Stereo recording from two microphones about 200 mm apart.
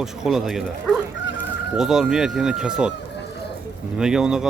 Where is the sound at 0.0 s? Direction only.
Centre (ahead or behind).